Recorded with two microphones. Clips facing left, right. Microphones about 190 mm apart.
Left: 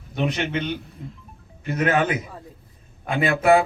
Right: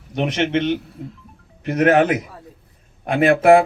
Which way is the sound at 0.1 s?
80° right.